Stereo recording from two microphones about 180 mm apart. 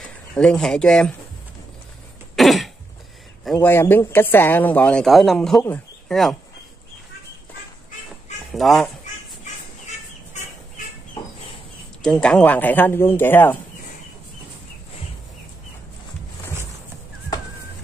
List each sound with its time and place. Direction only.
0.3 s speech: 5° left (ahead or behind)
2.3 s cough: centre (ahead or behind)
3.5 s speech: 10° left (ahead or behind)
8.5 s speech: centre (ahead or behind)
9.4 s fowl: 40° left (ahead or behind)
12.0 s speech: 5° left (ahead or behind)